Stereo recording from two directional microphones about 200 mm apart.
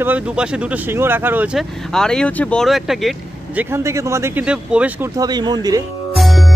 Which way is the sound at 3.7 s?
15° right (ahead or behind).